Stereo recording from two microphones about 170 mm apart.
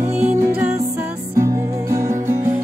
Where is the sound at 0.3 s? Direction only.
15° right (ahead or behind).